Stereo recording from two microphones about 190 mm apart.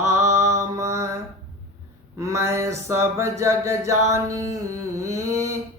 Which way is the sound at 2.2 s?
15° right (ahead or behind).